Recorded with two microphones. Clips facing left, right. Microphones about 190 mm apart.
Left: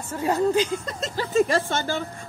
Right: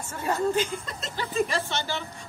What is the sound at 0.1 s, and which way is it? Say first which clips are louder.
Speech: left 4 dB; 40° left (ahead or behind).